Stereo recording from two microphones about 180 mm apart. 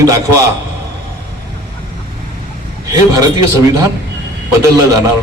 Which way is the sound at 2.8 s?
20° right (ahead or behind).